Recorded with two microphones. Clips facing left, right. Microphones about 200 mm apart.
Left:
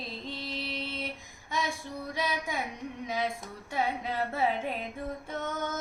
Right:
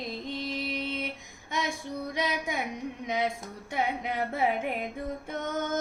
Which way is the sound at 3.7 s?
20° right (ahead or behind).